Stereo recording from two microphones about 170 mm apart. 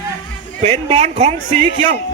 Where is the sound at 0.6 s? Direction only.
35° right (ahead or behind).